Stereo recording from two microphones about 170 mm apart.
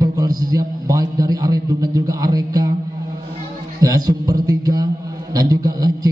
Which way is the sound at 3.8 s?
20° right (ahead or behind).